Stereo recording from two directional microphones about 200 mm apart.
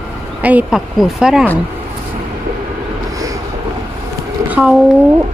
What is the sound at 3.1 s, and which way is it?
Vehicle, 15° right (ahead or behind).